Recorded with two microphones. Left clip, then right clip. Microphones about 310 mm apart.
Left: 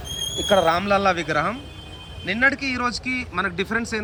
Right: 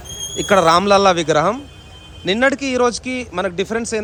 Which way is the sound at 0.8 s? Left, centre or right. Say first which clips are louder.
Right 7 dB; centre.